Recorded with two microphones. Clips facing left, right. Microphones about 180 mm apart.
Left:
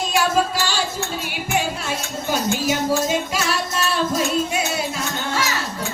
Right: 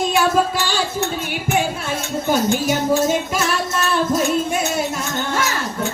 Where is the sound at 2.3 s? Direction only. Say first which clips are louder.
Right 3 dB; 50° right (ahead or behind).